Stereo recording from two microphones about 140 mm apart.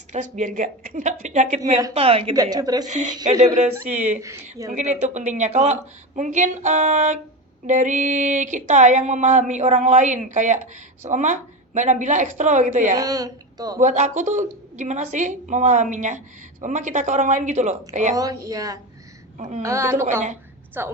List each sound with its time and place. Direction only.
0.1 s a woman's voice: 65° right (ahead or behind)
2.0 s a woman's voice: 45° right (ahead or behind)
2.3 s speech: 25° right (ahead or behind)
2.8 s a woman's voice: 60° right (ahead or behind)
13.0 s speech: 25° right (ahead or behind)
13.7 s a woman's voice: 60° right (ahead or behind)
18.1 s speech: 25° right (ahead or behind)
19.4 s a woman's voice: 55° right (ahead or behind)
19.6 s a woman's voice: 20° right (ahead or behind)